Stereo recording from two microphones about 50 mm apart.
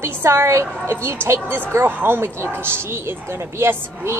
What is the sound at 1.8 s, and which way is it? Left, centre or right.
Speech, right.